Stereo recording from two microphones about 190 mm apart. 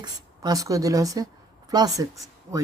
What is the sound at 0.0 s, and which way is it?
Speech, 20° right (ahead or behind).